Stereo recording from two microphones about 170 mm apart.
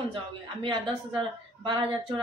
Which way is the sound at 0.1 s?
30° right (ahead or behind).